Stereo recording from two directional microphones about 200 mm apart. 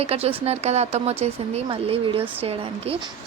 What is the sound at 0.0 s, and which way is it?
A woman's voice, 30° right (ahead or behind).